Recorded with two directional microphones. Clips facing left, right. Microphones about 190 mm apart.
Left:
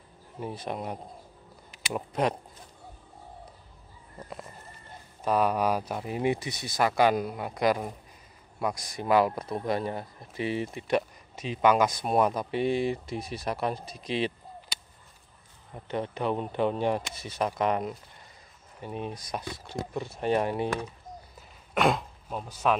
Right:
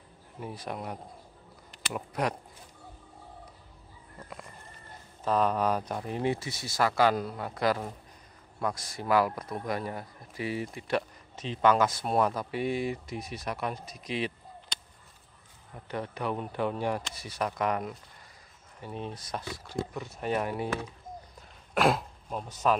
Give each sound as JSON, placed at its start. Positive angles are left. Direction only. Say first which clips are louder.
{"t": 0.4, "sound": "speech", "louder": "left 3 dB", "side_deg": 25}
{"t": 2.0, "sound": "speech", "louder": "left 3 dB", "side_deg": 25}
{"t": 5.2, "sound": "speech", "louder": "left 1 dB", "side_deg": 10}
{"t": 14.7, "sound": "a sound", "louder": "even", "side_deg": 10}
{"t": 15.7, "sound": "speech", "louder": "left 4 dB", "side_deg": 25}
{"t": 19.6, "sound": "speech", "louder": "left 1 dB", "side_deg": 25}
{"t": 21.4, "sound": "a sound", "louder": "even", "side_deg": 0}